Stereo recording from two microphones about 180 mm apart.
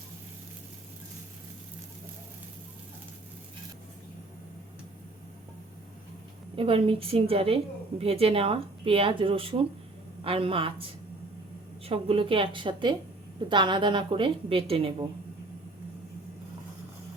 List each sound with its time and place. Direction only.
6.6 s a woman's voice: 30° right (ahead or behind)
11.9 s a woman's voice: 30° right (ahead or behind)